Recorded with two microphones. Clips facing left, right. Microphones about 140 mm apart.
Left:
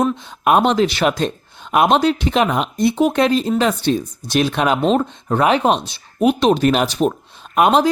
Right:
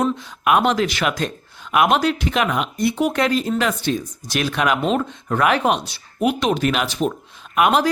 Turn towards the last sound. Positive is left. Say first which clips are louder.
# left 3 dB
turn(degrees=25)  # may be behind; listen again after turning